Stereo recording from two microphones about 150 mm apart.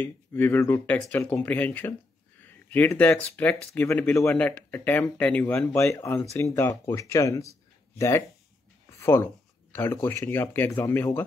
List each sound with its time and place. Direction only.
0.0 s speech: 15° left (ahead or behind)